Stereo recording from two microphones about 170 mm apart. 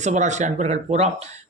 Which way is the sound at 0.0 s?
45° right (ahead or behind).